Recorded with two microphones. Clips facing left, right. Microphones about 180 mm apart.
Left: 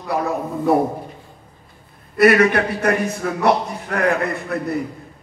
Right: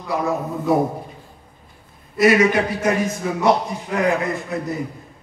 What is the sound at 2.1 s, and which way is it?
A man's voice, 60° left (ahead or behind).